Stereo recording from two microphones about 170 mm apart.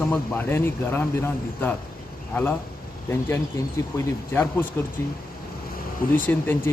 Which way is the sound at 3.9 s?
15° left (ahead or behind).